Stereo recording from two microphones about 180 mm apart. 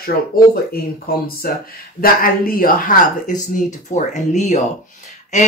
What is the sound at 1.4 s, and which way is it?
Speech, 60° left (ahead or behind).